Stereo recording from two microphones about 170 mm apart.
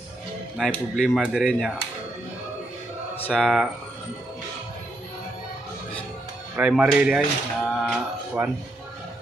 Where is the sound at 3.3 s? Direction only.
Centre (ahead or behind).